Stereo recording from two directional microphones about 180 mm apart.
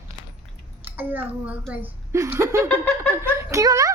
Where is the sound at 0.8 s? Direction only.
10° right (ahead or behind).